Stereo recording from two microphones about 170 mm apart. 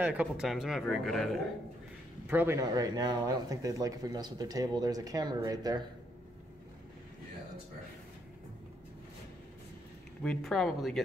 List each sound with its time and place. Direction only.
0.0 s speech: 10° right (ahead or behind)
2.2 s speech: 10° right (ahead or behind)
10.2 s speech: 5° left (ahead or behind)